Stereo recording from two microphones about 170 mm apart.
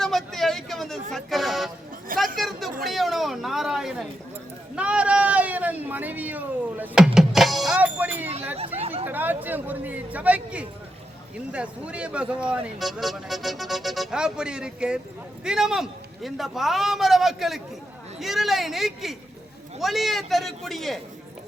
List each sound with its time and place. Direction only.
0.0 s vehicle: centre (ahead or behind)
1.1 s speech: centre (ahead or behind)
4.7 s a sound: 5° right (ahead or behind)
8.5 s chatter: 35° right (ahead or behind)
9.0 s speech: 10° right (ahead or behind)